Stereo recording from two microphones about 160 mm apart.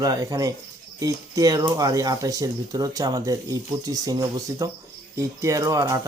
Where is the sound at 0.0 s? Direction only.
20° right (ahead or behind).